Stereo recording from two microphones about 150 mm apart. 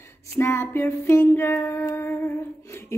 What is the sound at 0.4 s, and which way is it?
A woman's voice, 15° left (ahead or behind).